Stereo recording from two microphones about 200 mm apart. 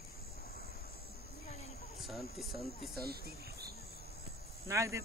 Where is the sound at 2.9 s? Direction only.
50° right (ahead or behind).